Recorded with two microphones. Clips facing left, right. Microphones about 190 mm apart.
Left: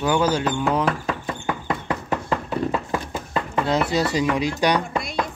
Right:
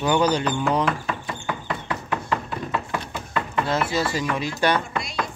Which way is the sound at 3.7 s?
20° left (ahead or behind).